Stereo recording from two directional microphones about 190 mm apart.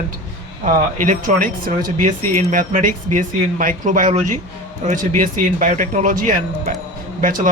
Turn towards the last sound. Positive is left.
turn(degrees=-45)  # may be behind; listen again after turning